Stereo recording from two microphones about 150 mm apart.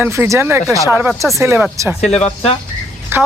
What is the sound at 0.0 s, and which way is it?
A man's voice, 15° right (ahead or behind).